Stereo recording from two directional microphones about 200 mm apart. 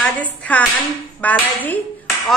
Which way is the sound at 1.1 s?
10° left (ahead or behind).